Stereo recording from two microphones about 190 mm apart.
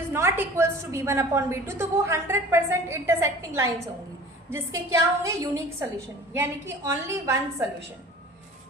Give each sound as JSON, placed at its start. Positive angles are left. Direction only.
{"t": 0.1, "sound": "a woman's voice", "side_deg": -10}